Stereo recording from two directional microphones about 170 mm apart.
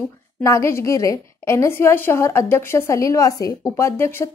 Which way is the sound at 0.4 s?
15° left (ahead or behind).